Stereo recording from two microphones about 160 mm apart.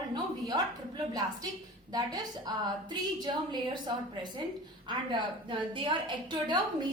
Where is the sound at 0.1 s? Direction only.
25° right (ahead or behind).